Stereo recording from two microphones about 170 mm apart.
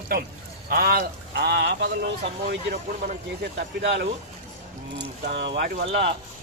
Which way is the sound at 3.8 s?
85° right.